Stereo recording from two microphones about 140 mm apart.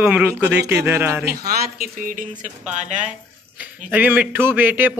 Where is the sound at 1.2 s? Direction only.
90° right; by 2.5 s 75° right (ahead or behind).